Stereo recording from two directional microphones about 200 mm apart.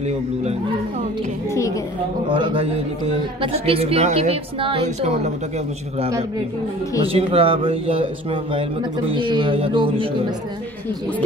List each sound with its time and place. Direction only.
1.5 s a woman's voice: 15° left (ahead or behind)
2.2 s speech: 25° right (ahead or behind)
7.1 s speech: 30° right (ahead or behind)